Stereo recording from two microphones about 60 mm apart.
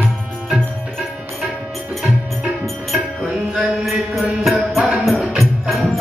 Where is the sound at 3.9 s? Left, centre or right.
Centre.